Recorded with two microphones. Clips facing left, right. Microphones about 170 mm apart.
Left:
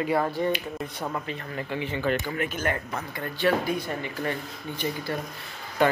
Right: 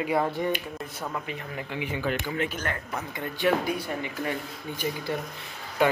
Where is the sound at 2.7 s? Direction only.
20° left (ahead or behind).